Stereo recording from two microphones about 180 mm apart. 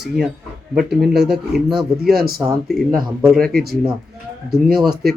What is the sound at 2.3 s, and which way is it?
Speech, centre (ahead or behind).